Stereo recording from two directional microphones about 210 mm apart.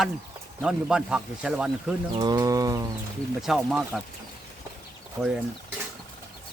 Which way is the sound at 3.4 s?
Centre (ahead or behind).